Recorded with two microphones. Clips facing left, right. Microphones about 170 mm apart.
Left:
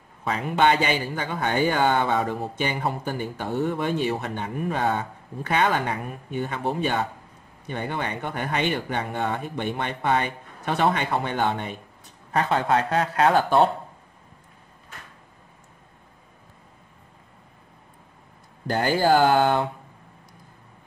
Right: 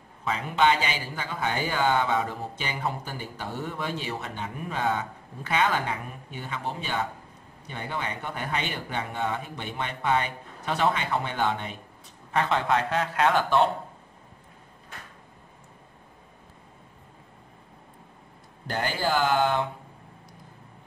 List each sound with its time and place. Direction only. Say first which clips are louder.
0.3 s speech: left 3 dB; 55° left (ahead or behind)
12.3 s a man's voice: left 3 dB; 40° left (ahead or behind)
18.7 s speech: left 7 dB; 45° left (ahead or behind)